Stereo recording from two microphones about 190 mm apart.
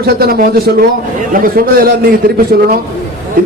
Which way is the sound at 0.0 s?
55° right (ahead or behind).